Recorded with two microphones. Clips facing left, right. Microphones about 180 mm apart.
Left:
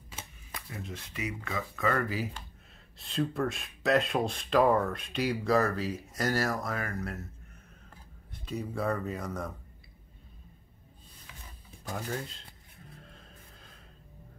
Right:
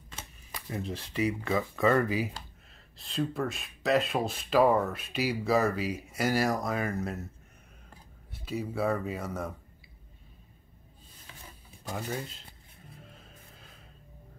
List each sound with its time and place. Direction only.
0.7 s speech: 30° right (ahead or behind)
3.0 s speech: centre (ahead or behind); by 7.2 s 20° right (ahead or behind)
8.5 s speech: 5° right (ahead or behind)
11.9 s speech: 5° right (ahead or behind)
13.0 s music: 5° right (ahead or behind)